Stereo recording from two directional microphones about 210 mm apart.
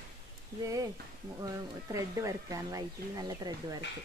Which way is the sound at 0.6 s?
15° right (ahead or behind).